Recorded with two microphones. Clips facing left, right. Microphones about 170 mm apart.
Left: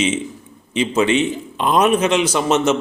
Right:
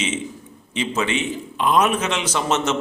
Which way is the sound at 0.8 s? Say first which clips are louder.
Left 7 dB; 15° left (ahead or behind).